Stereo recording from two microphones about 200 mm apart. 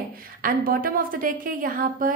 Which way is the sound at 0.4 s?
45° right (ahead or behind).